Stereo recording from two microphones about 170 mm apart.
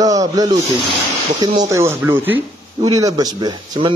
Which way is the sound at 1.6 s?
15° right (ahead or behind).